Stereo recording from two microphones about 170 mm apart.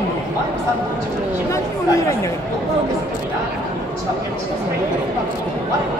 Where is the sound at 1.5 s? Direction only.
15° left (ahead or behind).